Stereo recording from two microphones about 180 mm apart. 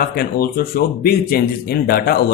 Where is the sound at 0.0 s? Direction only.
55° left (ahead or behind).